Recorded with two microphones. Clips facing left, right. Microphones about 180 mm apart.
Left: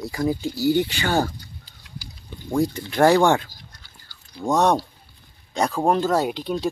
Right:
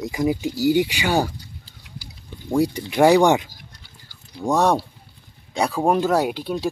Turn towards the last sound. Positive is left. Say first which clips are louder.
# right 1 dB
turn(degrees=-5)  # may be behind; listen again after turning